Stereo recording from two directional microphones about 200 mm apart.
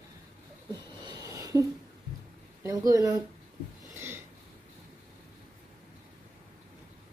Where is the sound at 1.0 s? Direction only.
20° right (ahead or behind).